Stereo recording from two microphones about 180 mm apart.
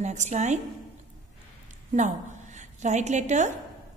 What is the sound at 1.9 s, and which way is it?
A woman's voice, 40° right (ahead or behind).